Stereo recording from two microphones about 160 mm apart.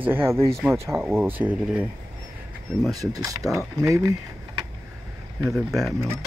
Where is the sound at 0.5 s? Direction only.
Centre (ahead or behind).